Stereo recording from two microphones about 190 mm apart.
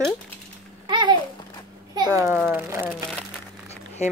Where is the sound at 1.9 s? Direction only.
20° right (ahead or behind).